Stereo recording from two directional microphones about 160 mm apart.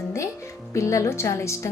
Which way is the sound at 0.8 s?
20° left (ahead or behind).